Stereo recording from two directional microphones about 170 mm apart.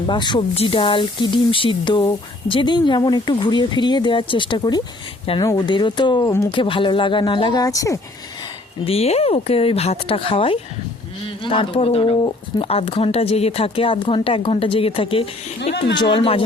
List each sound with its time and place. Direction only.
0.1 s speech: 25° left (ahead or behind)
8.9 s speech: 35° left (ahead or behind)